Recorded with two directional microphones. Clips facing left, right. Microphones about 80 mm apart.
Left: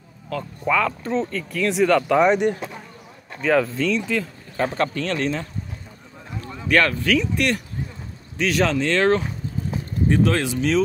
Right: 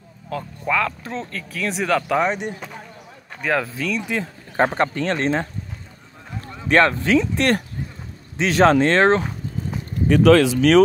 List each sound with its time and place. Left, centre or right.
0.3 s speech: centre
3.4 s speech: centre
4.6 s speech: right
6.7 s speech: right
10.0 s speech: right